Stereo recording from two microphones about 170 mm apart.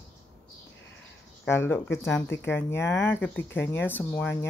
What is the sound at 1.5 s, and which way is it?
Speech, 15° left (ahead or behind).